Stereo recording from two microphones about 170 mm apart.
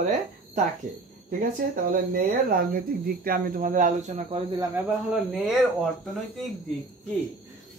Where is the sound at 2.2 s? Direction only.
60° right (ahead or behind); by 4.4 s 40° right (ahead or behind).